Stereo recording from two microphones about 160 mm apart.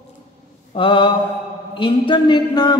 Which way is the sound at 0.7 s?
30° left (ahead or behind).